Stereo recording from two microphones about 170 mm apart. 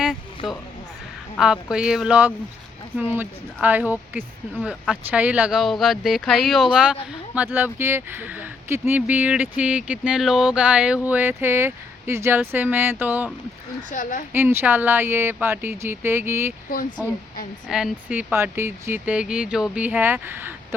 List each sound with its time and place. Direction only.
0.0 s a sound: centre (ahead or behind)
1.4 s speech: 5° right (ahead or behind)
13.9 s speech: 50° left (ahead or behind)
14.3 s speech: 10° right (ahead or behind)
17.7 s speech: 5° right (ahead or behind)